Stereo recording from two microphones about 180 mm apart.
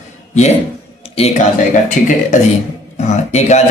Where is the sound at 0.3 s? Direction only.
40° left (ahead or behind).